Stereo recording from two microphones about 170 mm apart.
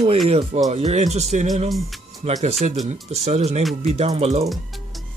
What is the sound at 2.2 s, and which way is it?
Speech, 40° right (ahead or behind).